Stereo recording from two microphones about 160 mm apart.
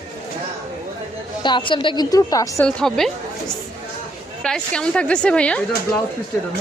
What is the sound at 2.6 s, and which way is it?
Speech, 5° left (ahead or behind).